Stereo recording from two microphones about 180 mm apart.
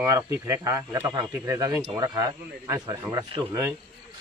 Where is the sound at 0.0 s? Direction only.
15° right (ahead or behind).